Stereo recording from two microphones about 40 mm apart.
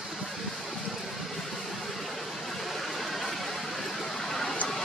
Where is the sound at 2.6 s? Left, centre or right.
Centre.